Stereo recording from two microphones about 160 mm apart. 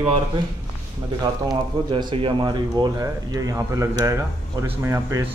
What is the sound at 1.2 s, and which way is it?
Speech, 30° right (ahead or behind).